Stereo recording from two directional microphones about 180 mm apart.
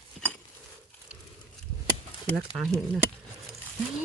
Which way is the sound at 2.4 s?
Centre (ahead or behind).